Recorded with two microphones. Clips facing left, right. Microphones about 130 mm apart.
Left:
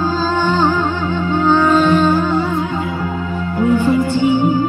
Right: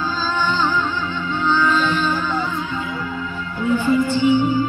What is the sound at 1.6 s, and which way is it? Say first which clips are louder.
Music: left 7 dB; 50° left (ahead or behind).